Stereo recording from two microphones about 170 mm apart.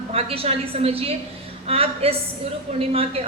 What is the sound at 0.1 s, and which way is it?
A woman's voice, 35° right (ahead or behind).